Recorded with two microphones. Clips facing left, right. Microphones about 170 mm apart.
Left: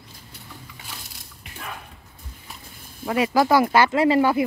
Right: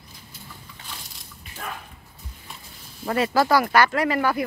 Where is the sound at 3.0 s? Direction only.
10° left (ahead or behind).